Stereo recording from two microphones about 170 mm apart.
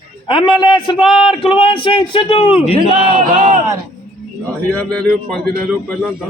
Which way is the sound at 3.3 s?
45° right (ahead or behind).